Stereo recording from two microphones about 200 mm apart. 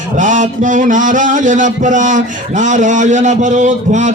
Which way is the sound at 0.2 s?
40° right (ahead or behind).